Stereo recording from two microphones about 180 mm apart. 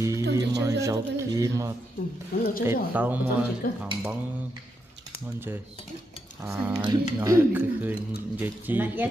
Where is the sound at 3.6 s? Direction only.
55° left (ahead or behind).